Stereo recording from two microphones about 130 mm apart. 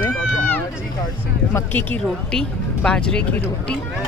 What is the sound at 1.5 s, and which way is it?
Speech, 15° left (ahead or behind).